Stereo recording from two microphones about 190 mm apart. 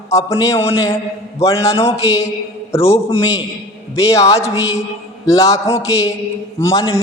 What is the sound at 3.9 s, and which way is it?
A man's voice, 15° left (ahead or behind).